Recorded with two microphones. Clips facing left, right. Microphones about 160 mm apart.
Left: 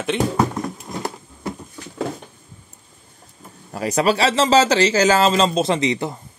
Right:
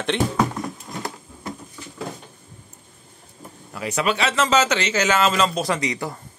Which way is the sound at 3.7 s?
40° left (ahead or behind).